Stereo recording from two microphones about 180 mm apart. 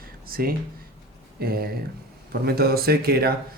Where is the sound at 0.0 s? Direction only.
55° right (ahead or behind).